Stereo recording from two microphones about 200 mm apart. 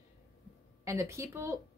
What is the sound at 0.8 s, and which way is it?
Speech, 15° right (ahead or behind).